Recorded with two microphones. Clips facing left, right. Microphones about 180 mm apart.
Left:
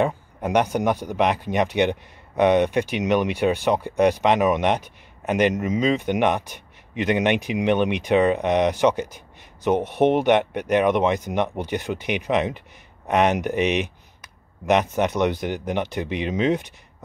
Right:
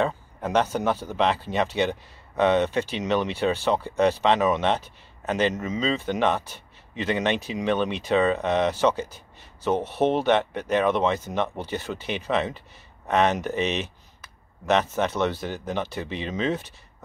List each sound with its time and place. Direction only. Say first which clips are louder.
0.0 s speech: left 3 dB; 15° left (ahead or behind)